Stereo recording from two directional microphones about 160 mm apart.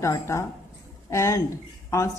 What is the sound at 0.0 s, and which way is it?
Speech, 20° left (ahead or behind).